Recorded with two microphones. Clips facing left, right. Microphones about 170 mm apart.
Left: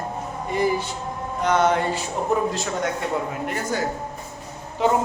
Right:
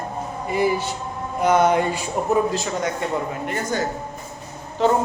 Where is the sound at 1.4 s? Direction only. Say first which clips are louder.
Right 3 dB; 10° right (ahead or behind).